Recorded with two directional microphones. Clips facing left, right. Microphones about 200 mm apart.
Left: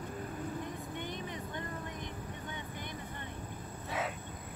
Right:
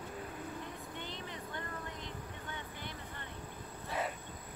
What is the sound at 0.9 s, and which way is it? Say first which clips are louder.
Vehicle: left 4 dB; 15° left (ahead or behind).